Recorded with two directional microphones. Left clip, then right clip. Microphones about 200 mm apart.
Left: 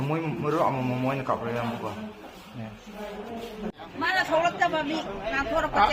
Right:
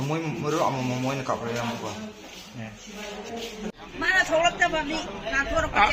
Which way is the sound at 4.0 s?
50° left (ahead or behind).